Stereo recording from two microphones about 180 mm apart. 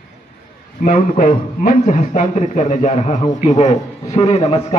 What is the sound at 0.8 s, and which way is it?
A man's voice, 50° left (ahead or behind).